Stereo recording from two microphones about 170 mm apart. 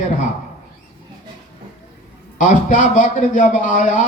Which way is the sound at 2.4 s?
50° left (ahead or behind).